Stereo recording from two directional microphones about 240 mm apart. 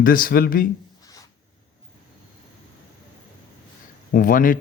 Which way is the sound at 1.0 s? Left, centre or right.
Centre.